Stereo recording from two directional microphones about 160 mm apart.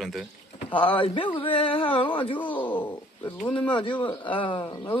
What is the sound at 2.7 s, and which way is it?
A man's voice, 30° left (ahead or behind).